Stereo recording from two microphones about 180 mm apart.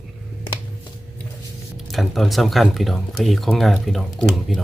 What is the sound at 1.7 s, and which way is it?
Speech, centre (ahead or behind).